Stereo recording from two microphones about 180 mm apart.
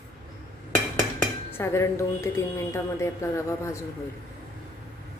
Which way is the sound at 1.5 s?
15° left (ahead or behind).